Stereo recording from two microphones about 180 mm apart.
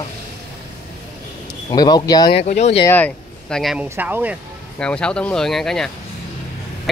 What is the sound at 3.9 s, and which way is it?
Speech, 10° right (ahead or behind).